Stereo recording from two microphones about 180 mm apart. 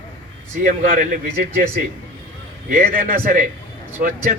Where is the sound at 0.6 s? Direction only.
45° right (ahead or behind).